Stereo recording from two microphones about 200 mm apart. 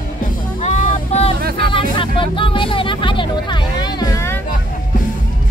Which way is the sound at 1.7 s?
25° left (ahead or behind).